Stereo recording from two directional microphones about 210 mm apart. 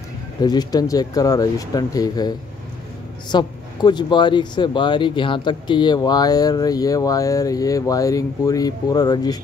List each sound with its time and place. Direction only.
0.4 s speech: 20° left (ahead or behind)